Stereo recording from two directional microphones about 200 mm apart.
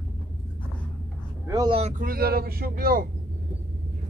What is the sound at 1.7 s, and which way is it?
Speech, 35° right (ahead or behind).